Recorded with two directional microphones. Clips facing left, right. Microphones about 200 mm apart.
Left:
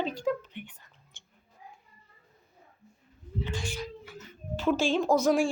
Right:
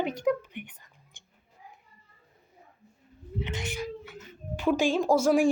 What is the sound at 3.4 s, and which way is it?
Speech, 20° right (ahead or behind).